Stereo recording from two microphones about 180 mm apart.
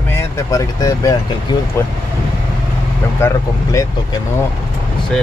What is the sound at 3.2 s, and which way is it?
Speech, 15° left (ahead or behind).